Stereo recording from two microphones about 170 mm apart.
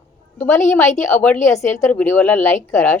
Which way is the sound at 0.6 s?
45° left (ahead or behind).